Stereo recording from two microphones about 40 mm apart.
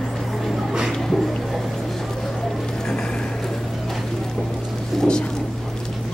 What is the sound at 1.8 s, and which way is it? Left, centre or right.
Vehicle, centre.